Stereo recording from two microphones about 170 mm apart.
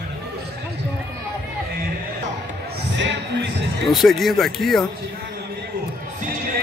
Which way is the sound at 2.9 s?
90° right.